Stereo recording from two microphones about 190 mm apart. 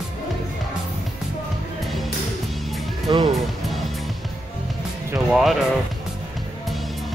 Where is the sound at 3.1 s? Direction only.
25° right (ahead or behind).